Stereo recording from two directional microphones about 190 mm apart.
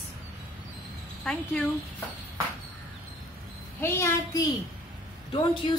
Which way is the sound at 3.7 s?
15° left (ahead or behind).